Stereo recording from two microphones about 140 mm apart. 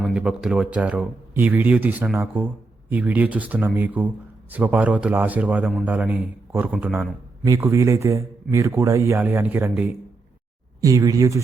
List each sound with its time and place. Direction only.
0.0 s speech: 5° right (ahead or behind)
7.4 s a man's voice: 20° right (ahead or behind)
10.8 s speech: 25° right (ahead or behind)